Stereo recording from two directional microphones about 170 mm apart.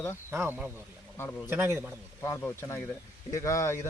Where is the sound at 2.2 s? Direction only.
15° left (ahead or behind).